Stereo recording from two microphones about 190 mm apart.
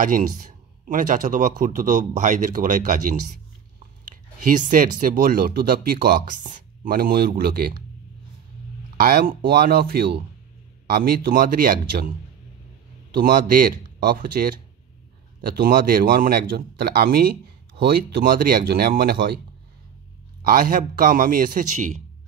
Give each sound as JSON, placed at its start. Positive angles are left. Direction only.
{"t": 0.0, "sound": "speech", "side_deg": -45}
{"t": 8.9, "sound": "speech", "side_deg": -50}
{"t": 13.1, "sound": "speech", "side_deg": -50}
{"t": 20.4, "sound": "speech", "side_deg": -45}